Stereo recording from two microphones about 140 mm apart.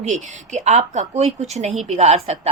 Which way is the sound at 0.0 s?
55° right (ahead or behind).